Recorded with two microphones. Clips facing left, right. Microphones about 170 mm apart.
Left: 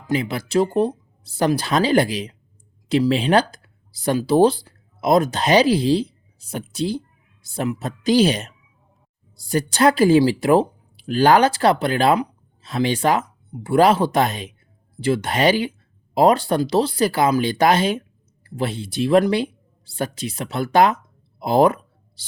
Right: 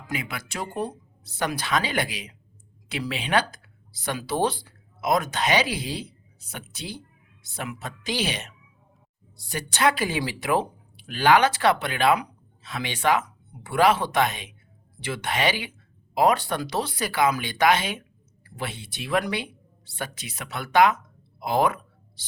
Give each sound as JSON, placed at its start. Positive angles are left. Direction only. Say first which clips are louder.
{"t": 0.1, "sound": "speech", "louder": "left 12 dB", "side_deg": 30}